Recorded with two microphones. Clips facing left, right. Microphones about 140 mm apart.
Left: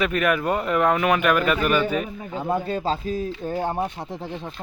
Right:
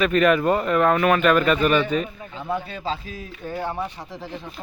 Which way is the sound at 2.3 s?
40° left (ahead or behind).